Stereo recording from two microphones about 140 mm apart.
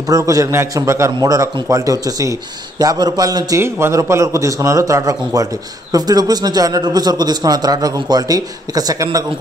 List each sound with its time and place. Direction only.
0.1 s a man's voice: 25° right (ahead or behind)